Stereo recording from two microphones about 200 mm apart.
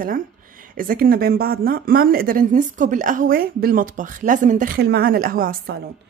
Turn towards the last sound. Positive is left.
turn(degrees=-50)  # may be behind; listen again after turning